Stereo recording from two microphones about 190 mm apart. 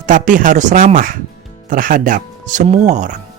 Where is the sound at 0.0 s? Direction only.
45° right (ahead or behind).